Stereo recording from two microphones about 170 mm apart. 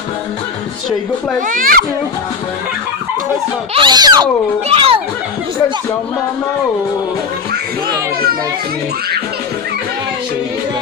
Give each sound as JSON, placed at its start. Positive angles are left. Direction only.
{"t": 1.5, "sound": "a child's voice", "side_deg": -55}
{"t": 3.7, "sound": "a child's voice", "side_deg": -25}